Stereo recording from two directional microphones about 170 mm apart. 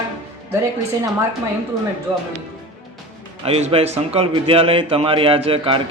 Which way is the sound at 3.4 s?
35° right (ahead or behind).